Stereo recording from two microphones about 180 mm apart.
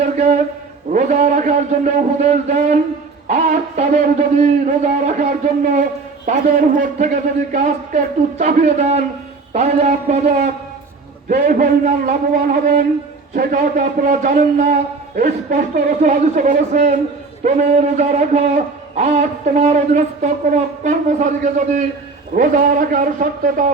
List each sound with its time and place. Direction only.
0.0 s a sound: 35° right (ahead or behind)
0.9 s a man's voice: 40° right (ahead or behind)
6.7 s a man's voice: 45° right (ahead or behind)